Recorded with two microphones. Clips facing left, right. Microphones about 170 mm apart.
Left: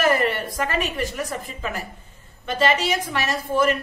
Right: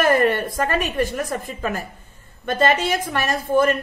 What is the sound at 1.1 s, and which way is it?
A woman's voice, 45° right (ahead or behind).